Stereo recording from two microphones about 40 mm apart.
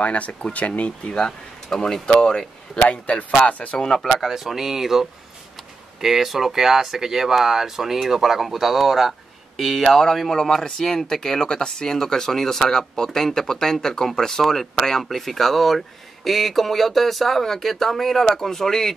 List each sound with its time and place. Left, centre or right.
0.0 s speech: left
1.7 s speech: centre
2.9 s speech: left
3.8 s speech: centre
4.1 s speech: centre